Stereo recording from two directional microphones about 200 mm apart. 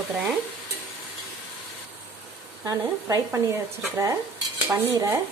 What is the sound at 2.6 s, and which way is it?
Stir, 15° right (ahead or behind).